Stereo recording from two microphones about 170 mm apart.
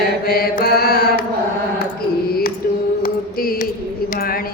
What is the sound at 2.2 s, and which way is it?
Music, 60° left (ahead or behind).